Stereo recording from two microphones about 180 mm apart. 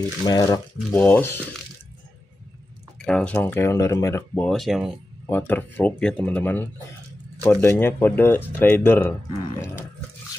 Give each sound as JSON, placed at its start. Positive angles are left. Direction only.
{"t": 0.3, "sound": "speech", "side_deg": 20}
{"t": 0.9, "sound": "speech", "side_deg": 10}
{"t": 3.1, "sound": "speech", "side_deg": 5}
{"t": 4.5, "sound": "speech", "side_deg": 0}